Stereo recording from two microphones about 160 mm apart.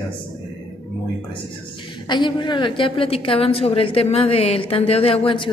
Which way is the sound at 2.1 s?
30° left (ahead or behind).